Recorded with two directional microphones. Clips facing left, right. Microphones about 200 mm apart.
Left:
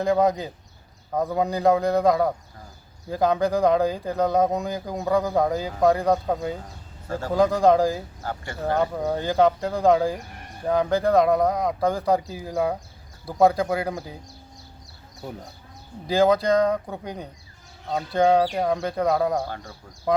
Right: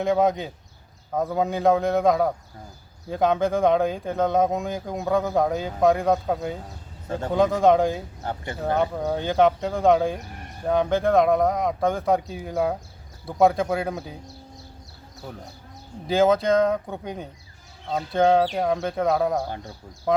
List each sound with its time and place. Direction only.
0.0 s speech: centre (ahead or behind)
8.2 s speech: 20° right (ahead or behind)
8.9 s speech: centre (ahead or behind)
16.0 s speech: centre (ahead or behind)
19.5 s speech: 20° right (ahead or behind)